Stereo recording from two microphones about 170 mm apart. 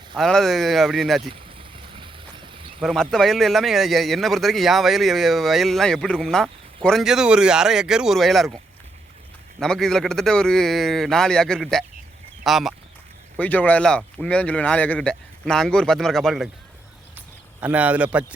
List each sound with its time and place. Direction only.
0.2 s a man's voice: centre (ahead or behind)
1.3 s a sound: 30° right (ahead or behind)
2.8 s a man's voice: centre (ahead or behind)
9.6 s a man's voice: 5° left (ahead or behind)
17.2 s speech: 10° right (ahead or behind)